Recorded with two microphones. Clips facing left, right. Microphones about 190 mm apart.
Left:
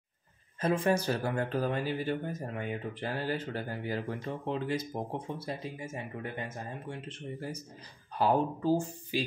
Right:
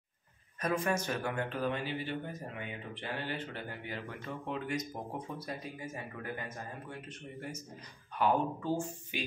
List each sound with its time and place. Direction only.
0.6 s speech: 30° left (ahead or behind)